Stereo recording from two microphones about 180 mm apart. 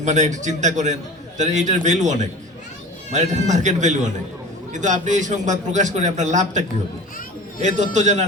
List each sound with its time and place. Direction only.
0.0 s a man's voice: 40° right (ahead or behind)